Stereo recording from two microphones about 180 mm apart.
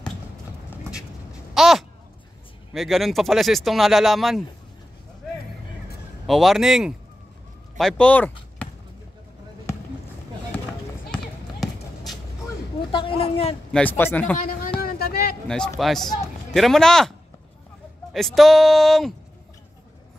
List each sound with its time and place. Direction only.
1.5 s a sound: centre (ahead or behind)
2.7 s speech: centre (ahead or behind)
6.2 s speech: centre (ahead or behind)
11.6 s basketball bounce: centre (ahead or behind)
12.9 s speech: 30° left (ahead or behind)
13.7 s a man's voice: 5° left (ahead or behind)
14.4 s speech: 50° left (ahead or behind)
14.8 s a sound: 60° left (ahead or behind)
15.4 s speech: 5° left (ahead or behind)
18.1 s speech: centre (ahead or behind)